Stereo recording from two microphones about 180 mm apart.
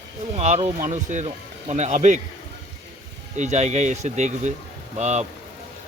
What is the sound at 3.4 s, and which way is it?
Speech, 40° right (ahead or behind).